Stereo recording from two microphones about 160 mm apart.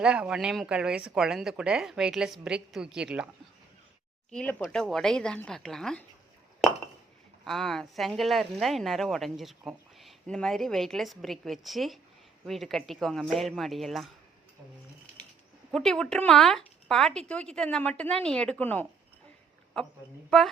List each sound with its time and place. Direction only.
0.0 s speech: 5° right (ahead or behind)
4.3 s speech: 5° left (ahead or behind)
7.4 s speech: centre (ahead or behind)
15.7 s speech: centre (ahead or behind)